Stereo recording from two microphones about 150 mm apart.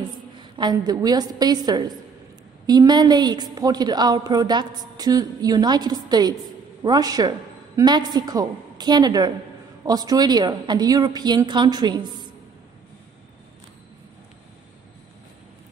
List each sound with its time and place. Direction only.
0.6 s a woman's voice: 30° right (ahead or behind)